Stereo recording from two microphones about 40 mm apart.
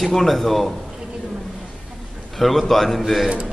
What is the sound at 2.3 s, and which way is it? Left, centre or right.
Speech, centre.